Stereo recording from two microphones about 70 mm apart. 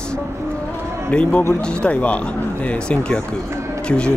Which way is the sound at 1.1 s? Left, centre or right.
Centre.